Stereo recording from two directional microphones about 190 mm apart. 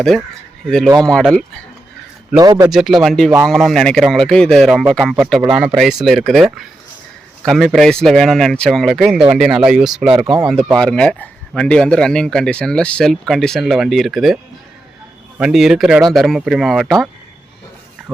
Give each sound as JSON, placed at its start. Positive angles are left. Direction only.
{"t": 0.9, "sound": "speech", "side_deg": 5}
{"t": 2.4, "sound": "a man's voice", "side_deg": -20}
{"t": 2.6, "sound": "speech", "side_deg": 0}
{"t": 15.4, "sound": "speech", "side_deg": -5}